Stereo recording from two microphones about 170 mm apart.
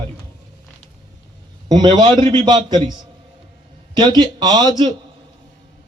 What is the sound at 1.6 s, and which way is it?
A man's voice, 25° right (ahead or behind).